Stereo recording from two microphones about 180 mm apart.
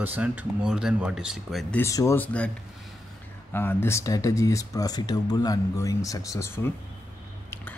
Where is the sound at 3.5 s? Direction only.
15° left (ahead or behind).